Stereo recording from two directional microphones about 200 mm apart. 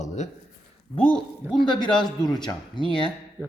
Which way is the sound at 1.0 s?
5° left (ahead or behind).